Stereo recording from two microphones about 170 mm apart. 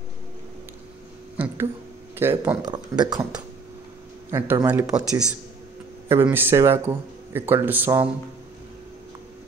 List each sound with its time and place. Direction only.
1.3 s a sound: 10° right (ahead or behind)
2.1 s speech: 15° right (ahead or behind)
2.6 s speech: 25° right (ahead or behind)
4.3 s speech: 15° right (ahead or behind)